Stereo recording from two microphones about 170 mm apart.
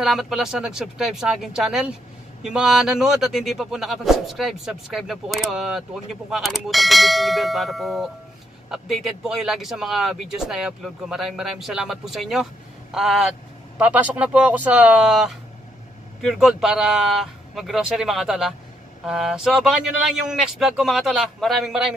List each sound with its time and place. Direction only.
0.0 s speech: centre (ahead or behind)